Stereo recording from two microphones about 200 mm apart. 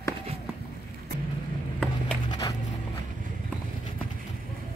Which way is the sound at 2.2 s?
20° left (ahead or behind).